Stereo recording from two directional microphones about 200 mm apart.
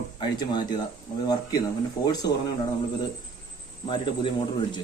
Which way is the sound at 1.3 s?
20° left (ahead or behind).